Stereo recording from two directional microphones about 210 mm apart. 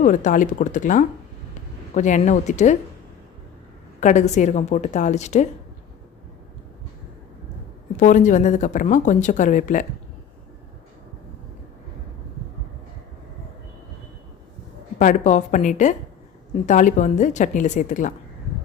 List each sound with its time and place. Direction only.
0.0 s a woman's voice: 35° left (ahead or behind)
4.0 s a woman's voice: 35° left (ahead or behind)
7.9 s a woman's voice: 35° left (ahead or behind)
14.9 s a woman's voice: 35° left (ahead or behind)